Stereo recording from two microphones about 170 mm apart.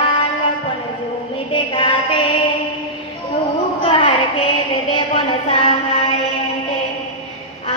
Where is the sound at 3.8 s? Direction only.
30° left (ahead or behind).